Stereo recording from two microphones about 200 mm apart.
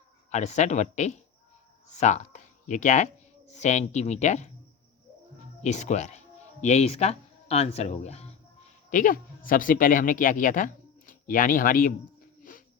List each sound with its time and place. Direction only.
0.3 s speech: 35° left (ahead or behind)
5.6 s speech: 35° left (ahead or behind)
12.4 s music: 45° left (ahead or behind)